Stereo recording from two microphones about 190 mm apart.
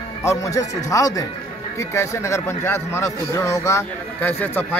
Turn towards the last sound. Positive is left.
turn(degrees=10)  # may be behind; listen again after turning